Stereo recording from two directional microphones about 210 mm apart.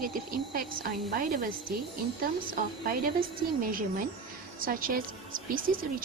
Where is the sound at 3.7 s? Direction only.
40° right (ahead or behind).